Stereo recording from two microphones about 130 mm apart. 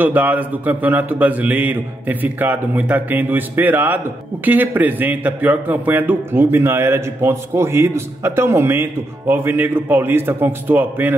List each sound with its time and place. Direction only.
0.0 s a man's voice: 15° right (ahead or behind)